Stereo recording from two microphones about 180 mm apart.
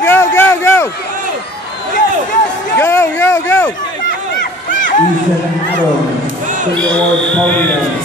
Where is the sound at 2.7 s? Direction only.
15° left (ahead or behind).